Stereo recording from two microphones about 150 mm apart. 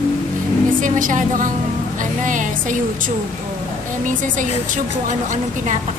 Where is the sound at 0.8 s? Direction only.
60° right (ahead or behind).